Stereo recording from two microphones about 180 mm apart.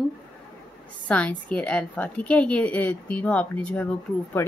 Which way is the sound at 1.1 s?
5° left (ahead or behind).